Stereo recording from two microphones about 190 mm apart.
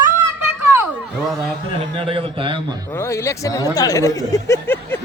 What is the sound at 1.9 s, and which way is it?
Speech, 30° right (ahead or behind).